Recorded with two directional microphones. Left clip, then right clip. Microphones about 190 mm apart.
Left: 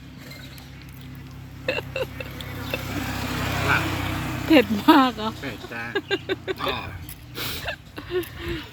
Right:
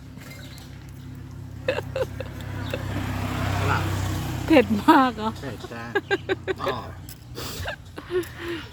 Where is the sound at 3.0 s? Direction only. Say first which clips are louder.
Left 2 dB; 50° left (ahead or behind).